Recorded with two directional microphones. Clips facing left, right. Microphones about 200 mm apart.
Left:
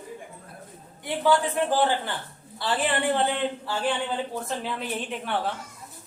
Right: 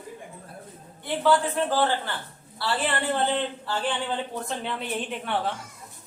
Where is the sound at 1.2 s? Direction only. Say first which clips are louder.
Even; 15° left (ahead or behind).